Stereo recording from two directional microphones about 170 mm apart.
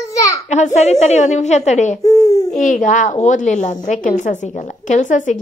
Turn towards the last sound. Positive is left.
turn(degrees=45)  # may be behind; listen again after turning